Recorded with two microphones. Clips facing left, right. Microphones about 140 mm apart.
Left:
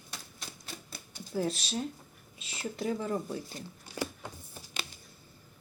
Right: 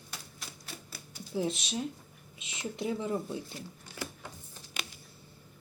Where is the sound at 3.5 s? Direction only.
15° left (ahead or behind).